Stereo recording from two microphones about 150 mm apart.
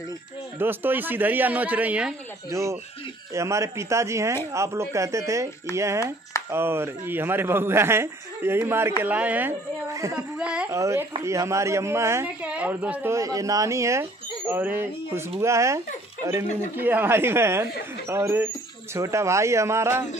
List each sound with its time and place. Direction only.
0.6 s a man's voice: 15° right (ahead or behind)
2.5 s a man's voice: 20° right (ahead or behind)
10.3 s speech: 5° right (ahead or behind)
10.7 s a woman's voice: 20° right (ahead or behind)
13.1 s a man's voice: 20° right (ahead or behind)